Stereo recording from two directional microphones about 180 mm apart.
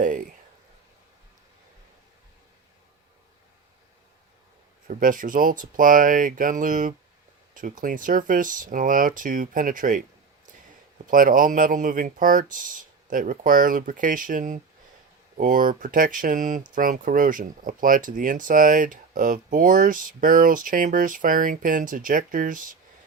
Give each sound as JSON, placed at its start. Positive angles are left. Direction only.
{"t": 4.9, "sound": "speech", "side_deg": -50}